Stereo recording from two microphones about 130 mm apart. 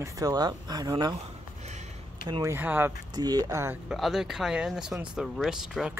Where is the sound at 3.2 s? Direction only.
30° right (ahead or behind).